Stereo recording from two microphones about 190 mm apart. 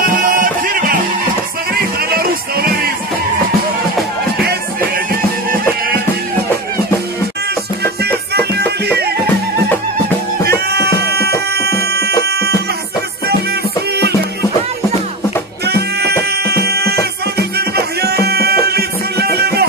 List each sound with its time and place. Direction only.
0.2 s music: 45° right (ahead or behind)
11.5 s music: 55° right (ahead or behind)
15.6 s music: 60° right (ahead or behind)